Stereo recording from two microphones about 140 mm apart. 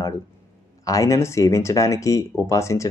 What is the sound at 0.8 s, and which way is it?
A man's voice, 25° left (ahead or behind).